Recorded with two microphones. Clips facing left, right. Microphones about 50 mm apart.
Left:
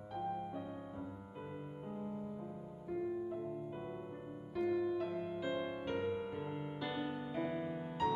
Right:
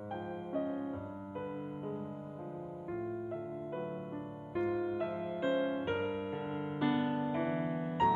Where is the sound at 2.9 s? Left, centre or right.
Right.